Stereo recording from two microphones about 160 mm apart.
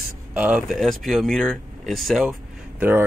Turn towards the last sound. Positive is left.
turn(degrees=-15)  # may be behind; listen again after turning